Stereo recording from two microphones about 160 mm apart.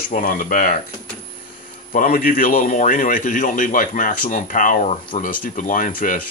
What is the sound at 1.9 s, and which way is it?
A man's voice, 60° left (ahead or behind).